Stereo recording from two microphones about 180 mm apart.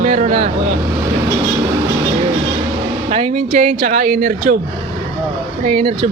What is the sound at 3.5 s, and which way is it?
Speech, 50° right (ahead or behind).